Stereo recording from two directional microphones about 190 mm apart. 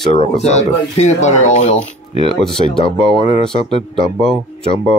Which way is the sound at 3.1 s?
30° left (ahead or behind).